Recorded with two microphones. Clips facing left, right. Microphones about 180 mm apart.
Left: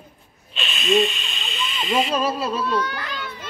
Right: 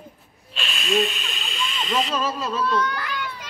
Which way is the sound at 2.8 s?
25° left (ahead or behind).